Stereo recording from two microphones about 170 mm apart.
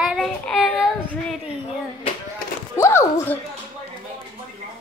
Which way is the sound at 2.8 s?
15° left (ahead or behind).